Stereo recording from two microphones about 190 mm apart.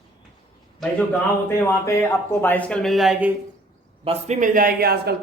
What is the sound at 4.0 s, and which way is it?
A man's voice, 35° right (ahead or behind).